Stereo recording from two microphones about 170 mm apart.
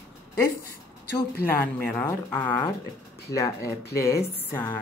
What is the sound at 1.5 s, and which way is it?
A woman's voice, 15° left (ahead or behind).